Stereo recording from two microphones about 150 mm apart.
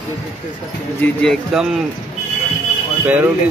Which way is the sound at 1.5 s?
Centre (ahead or behind).